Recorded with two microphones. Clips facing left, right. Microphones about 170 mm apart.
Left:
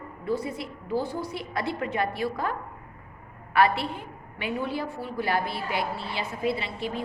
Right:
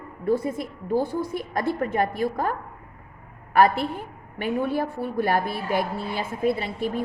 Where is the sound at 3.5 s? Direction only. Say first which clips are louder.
Right 4 dB; 45° right (ahead or behind).